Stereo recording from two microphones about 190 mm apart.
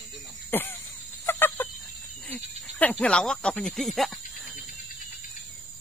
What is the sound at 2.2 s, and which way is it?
Snake, 10° left (ahead or behind).